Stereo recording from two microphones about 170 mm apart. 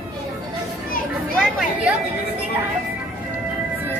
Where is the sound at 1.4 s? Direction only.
5° right (ahead or behind).